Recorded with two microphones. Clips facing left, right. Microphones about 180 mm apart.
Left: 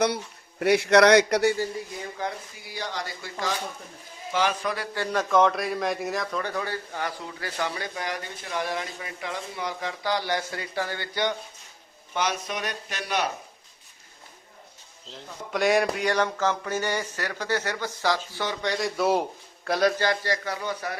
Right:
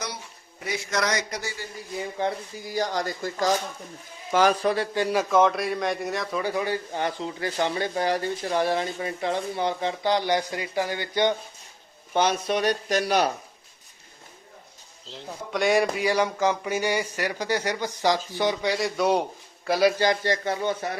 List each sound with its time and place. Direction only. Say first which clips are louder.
0.6 s speech: left 10 dB; 70° left (ahead or behind)
2.2 s a man's voice: right 5 dB; 25° right (ahead or behind)
2.6 s speech: right 7 dB; 40° right (ahead or behind)
4.9 s a man's voice: left 1 dB; 10° right (ahead or behind)
12.1 s speech: right 6 dB; 30° right (ahead or behind)
15.0 s a man's voice: right 3 dB; centre (ahead or behind)
20.0 s a man's voice: right 3 dB; 20° right (ahead or behind)